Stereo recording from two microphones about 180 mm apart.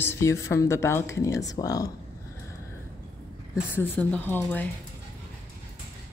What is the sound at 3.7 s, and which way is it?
Speech, 10° left (ahead or behind).